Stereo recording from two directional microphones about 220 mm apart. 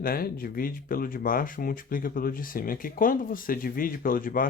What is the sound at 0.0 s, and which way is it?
Speech, 40° left (ahead or behind).